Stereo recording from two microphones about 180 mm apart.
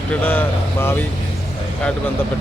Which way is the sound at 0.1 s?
10° left (ahead or behind).